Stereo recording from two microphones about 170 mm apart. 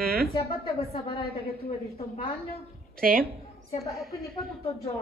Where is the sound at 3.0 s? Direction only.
60° right (ahead or behind).